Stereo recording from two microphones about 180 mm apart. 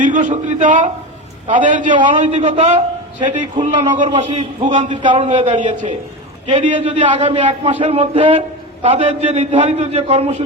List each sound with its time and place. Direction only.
0.0 s speech: 45° right (ahead or behind)
2.0 s a man's voice: 25° right (ahead or behind)
3.9 s a man's voice: 35° right (ahead or behind)
4.9 s a man's voice: 25° right (ahead or behind)